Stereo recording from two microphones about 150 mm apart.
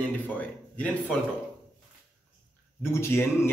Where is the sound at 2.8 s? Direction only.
15° left (ahead or behind).